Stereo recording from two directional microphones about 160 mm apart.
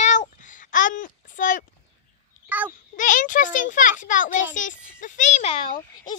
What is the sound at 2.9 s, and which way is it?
A child's voice, 55° left (ahead or behind).